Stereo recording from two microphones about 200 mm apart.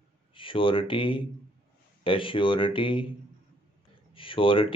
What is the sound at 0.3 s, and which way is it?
Speech, 25° left (ahead or behind).